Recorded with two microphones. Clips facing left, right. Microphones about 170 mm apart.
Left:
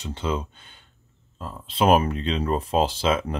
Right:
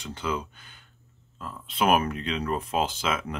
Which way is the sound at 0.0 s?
25° left (ahead or behind).